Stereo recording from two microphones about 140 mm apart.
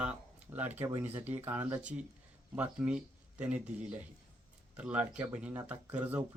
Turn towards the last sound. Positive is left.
turn(degrees=-10)  # may be behind; listen again after turning